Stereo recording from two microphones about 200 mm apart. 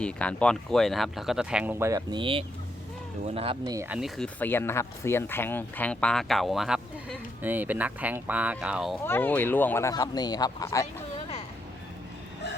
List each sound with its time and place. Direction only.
0.0 s speech: 5° left (ahead or behind); by 3.8 s 25° right (ahead or behind)
3.8 s speech: 5° right (ahead or behind)
9.0 s speech: 10° left (ahead or behind)